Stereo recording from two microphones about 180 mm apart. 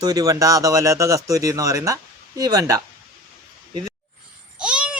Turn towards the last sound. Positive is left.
turn(degrees=-5)  # may be behind; listen again after turning